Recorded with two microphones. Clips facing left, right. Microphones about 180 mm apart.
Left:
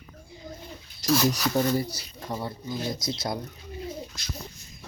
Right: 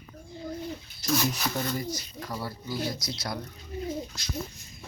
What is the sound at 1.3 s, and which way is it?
Speech, 40° left (ahead or behind).